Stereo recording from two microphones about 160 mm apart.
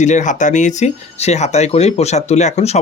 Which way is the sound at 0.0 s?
50° left (ahead or behind).